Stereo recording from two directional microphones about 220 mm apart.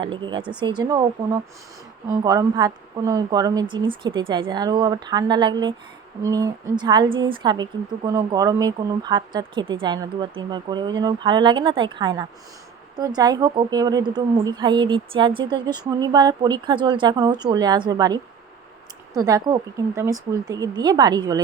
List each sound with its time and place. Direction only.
0.0 s a woman's voice: 20° right (ahead or behind)